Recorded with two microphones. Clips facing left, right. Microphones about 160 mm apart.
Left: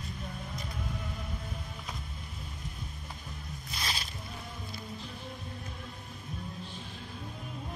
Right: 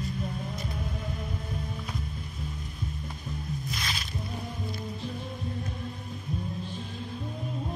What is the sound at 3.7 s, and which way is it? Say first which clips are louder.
Music: right 2 dB; 35° left (ahead or behind).